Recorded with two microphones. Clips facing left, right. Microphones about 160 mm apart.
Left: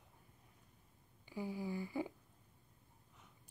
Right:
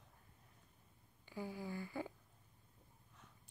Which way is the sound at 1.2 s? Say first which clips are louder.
Left 3 dB; 15° left (ahead or behind).